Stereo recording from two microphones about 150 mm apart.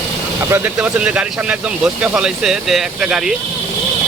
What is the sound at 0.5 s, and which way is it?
Speech, 10° right (ahead or behind).